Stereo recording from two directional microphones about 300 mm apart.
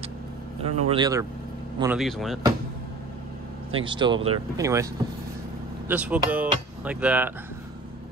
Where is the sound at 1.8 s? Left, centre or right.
Centre.